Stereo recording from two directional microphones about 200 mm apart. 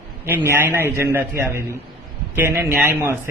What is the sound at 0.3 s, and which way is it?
A man's voice, 10° right (ahead or behind).